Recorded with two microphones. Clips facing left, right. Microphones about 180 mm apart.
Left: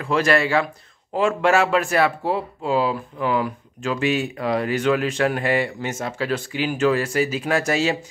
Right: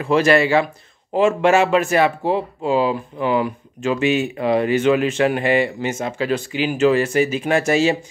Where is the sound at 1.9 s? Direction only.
20° right (ahead or behind).